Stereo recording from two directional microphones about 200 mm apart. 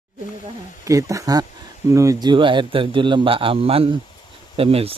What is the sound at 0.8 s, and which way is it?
A man's voice, 15° right (ahead or behind).